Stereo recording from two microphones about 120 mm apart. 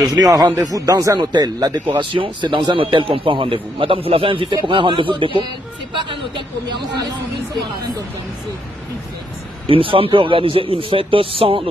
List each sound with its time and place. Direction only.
0.0 s a man's voice: 35° right (ahead or behind)
9.7 s speech: 50° right (ahead or behind)